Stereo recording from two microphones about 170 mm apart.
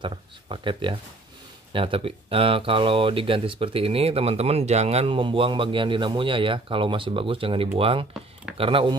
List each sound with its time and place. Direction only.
0.0 s speech: 30° right (ahead or behind)